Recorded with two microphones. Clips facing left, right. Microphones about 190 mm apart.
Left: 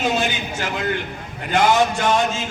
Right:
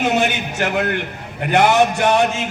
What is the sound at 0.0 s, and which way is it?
A man's voice, 65° right (ahead or behind).